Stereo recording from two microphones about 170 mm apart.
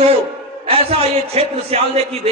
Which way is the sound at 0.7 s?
35° right (ahead or behind).